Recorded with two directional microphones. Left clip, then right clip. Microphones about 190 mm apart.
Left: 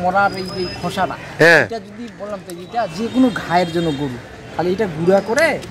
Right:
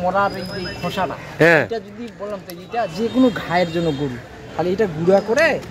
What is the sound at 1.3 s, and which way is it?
Speech, centre (ahead or behind).